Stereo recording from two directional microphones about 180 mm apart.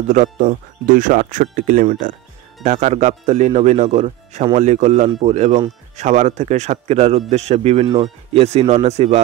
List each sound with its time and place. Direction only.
0.1 s speech: 45° right (ahead or behind)